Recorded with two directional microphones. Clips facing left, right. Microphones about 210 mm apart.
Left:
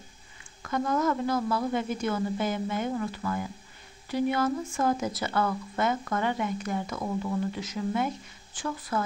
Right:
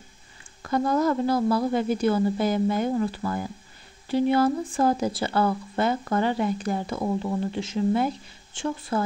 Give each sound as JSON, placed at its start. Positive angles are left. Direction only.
{"t": 0.6, "sound": "speech", "side_deg": -35}